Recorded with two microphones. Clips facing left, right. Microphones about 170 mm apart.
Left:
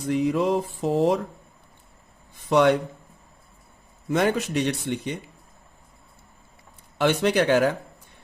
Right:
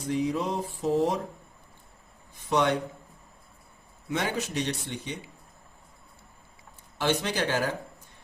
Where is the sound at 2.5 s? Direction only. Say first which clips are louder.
Left 7 dB; 60° left (ahead or behind).